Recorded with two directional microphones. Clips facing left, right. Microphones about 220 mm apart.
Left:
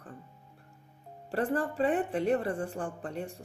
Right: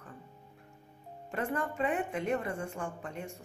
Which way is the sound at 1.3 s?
35° left (ahead or behind).